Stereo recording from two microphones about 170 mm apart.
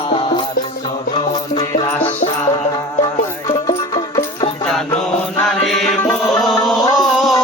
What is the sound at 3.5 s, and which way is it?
Music, 20° left (ahead or behind).